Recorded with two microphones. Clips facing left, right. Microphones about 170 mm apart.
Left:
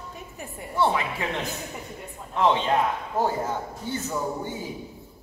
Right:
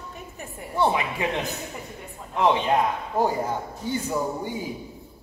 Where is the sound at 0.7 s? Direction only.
15° right (ahead or behind).